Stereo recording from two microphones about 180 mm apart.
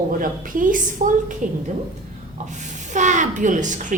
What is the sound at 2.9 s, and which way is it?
A woman's voice, 40° right (ahead or behind).